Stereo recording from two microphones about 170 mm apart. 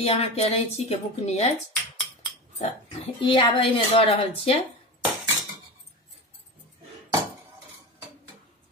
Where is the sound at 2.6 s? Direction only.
35° left (ahead or behind).